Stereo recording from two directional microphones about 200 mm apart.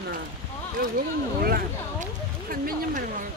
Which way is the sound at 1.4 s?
45° right (ahead or behind).